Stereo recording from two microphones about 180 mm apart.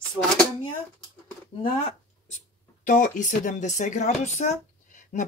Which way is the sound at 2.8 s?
45° left (ahead or behind).